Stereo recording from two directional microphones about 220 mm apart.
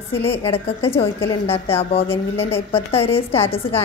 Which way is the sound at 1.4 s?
25° left (ahead or behind).